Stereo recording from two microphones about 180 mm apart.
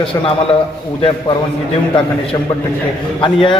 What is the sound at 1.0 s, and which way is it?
Speech, 30° left (ahead or behind).